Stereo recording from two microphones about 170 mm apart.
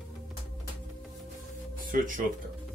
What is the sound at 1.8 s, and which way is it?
Speech, 50° right (ahead or behind).